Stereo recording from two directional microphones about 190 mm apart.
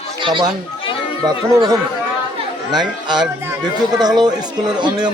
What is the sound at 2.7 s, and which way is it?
Speech, 20° right (ahead or behind).